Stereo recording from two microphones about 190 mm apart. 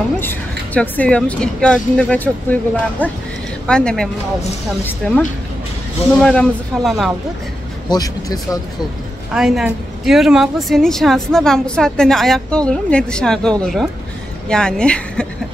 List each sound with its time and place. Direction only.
0.2 s a woman's voice: 10° left (ahead or behind)
6.2 s a woman's voice: centre (ahead or behind)
7.9 s speech: 20° left (ahead or behind)
9.3 s a woman's voice: centre (ahead or behind)